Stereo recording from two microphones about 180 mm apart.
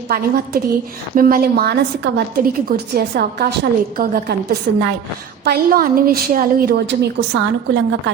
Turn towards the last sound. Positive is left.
turn(degrees=-80)